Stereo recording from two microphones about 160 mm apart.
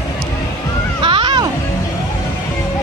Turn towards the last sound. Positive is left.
turn(degrees=-30)  # may be behind; listen again after turning